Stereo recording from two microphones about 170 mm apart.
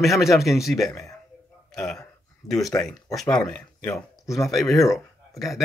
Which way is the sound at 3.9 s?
20° left (ahead or behind).